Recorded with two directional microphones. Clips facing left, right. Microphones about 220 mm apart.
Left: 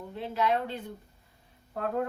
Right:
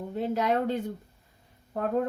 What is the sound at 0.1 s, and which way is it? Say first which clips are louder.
Speech: right 2 dB; 45° right (ahead or behind).